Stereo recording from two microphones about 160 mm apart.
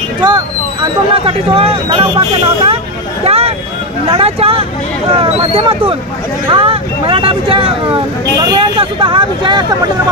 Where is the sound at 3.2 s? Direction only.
40° right (ahead or behind).